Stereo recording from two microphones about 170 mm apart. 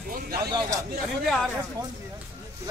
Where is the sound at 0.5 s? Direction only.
25° right (ahead or behind).